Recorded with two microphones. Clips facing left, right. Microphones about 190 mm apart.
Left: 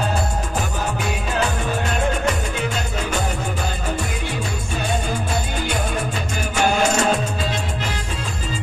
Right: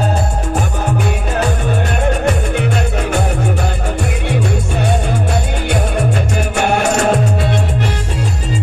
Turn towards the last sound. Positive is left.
turn(degrees=-65)  # may be behind; listen again after turning